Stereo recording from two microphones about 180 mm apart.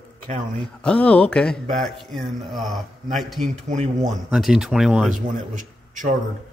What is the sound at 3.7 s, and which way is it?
Speech, 40° right (ahead or behind).